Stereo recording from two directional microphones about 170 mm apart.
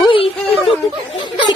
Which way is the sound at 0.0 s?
30° left (ahead or behind).